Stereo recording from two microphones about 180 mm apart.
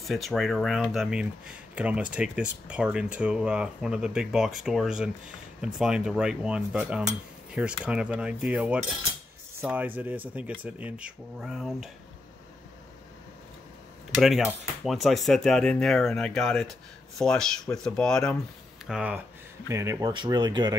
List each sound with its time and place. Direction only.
0.0 s speech: centre (ahead or behind)
14.2 s speech: centre (ahead or behind)
19.7 s speech: 15° right (ahead or behind)